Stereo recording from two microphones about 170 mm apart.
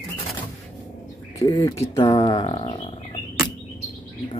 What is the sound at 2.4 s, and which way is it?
Bird, 35° left (ahead or behind).